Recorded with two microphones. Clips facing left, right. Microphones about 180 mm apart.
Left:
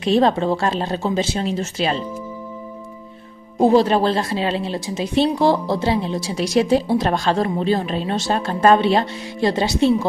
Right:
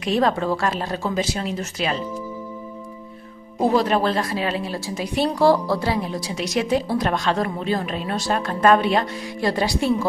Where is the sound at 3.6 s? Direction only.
30° left (ahead or behind).